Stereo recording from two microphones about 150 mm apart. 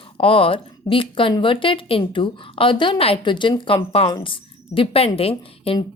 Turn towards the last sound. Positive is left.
turn(degrees=40)  # may be behind; listen again after turning